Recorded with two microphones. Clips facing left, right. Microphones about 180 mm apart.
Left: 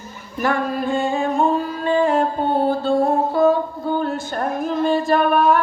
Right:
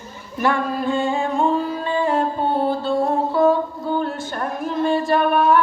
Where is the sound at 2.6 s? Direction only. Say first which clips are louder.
Left 2 dB; 45° left (ahead or behind).